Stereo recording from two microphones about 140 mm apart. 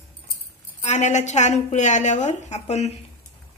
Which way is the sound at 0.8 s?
55° left (ahead or behind).